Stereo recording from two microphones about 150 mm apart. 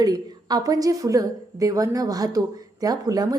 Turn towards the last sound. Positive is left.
turn(degrees=-25)  # may be behind; listen again after turning